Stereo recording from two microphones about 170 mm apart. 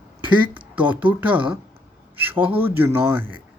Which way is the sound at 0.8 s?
10° right (ahead or behind).